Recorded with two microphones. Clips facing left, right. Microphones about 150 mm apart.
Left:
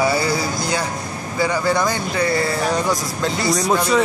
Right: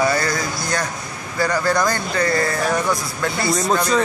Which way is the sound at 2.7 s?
20° left (ahead or behind).